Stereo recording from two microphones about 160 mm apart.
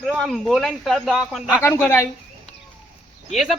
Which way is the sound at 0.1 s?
Centre (ahead or behind).